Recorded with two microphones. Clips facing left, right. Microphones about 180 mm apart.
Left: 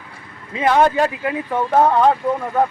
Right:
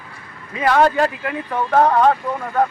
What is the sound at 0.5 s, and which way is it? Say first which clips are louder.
A man's voice: even; 20° left (ahead or behind).